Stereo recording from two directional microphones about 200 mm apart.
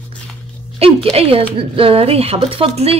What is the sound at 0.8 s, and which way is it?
A woman's voice, 30° right (ahead or behind).